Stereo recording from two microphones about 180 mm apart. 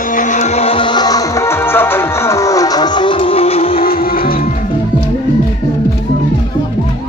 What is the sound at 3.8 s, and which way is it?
Music, 55° left (ahead or behind).